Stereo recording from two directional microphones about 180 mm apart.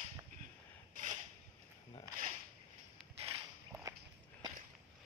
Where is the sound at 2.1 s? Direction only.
15° right (ahead or behind).